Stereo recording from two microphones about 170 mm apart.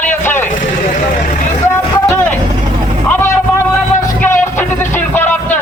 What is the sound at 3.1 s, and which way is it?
Vehicle, 15° left (ahead or behind).